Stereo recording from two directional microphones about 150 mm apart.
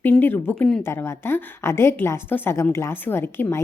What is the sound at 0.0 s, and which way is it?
Speech, 15° left (ahead or behind).